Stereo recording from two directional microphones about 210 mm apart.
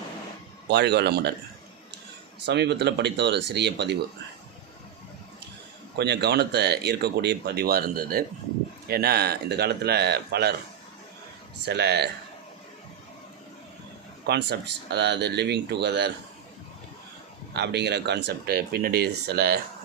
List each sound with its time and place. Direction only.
0.7 s speech: 55° right (ahead or behind)
2.5 s speech: 55° right (ahead or behind)
6.0 s speech: 55° right (ahead or behind)
11.6 s speech: 50° right (ahead or behind)
14.3 s speech: 50° right (ahead or behind)
17.5 s speech: 55° right (ahead or behind)